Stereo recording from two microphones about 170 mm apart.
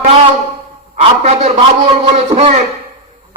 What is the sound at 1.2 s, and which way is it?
A man's voice, 40° right (ahead or behind).